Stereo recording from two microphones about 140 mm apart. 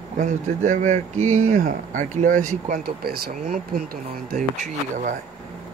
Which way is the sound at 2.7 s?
90° right.